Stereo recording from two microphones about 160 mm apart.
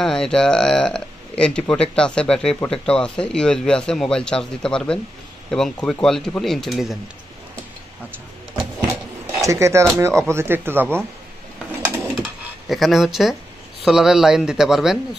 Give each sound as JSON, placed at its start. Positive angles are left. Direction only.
{"t": 0.0, "sound": "speech", "side_deg": 5}
{"t": 9.4, "sound": "speech", "side_deg": -20}
{"t": 12.2, "sound": "speech", "side_deg": 0}